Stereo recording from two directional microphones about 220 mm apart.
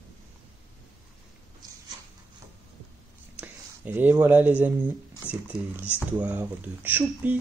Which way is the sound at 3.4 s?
10° right (ahead or behind).